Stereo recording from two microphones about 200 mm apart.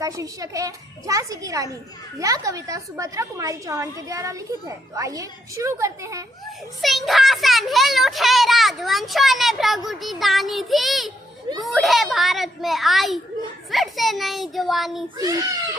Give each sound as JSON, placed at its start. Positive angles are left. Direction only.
{"t": 0.0, "sound": "a woman's voice", "side_deg": -15}
{"t": 6.8, "sound": "a child's voice", "side_deg": 0}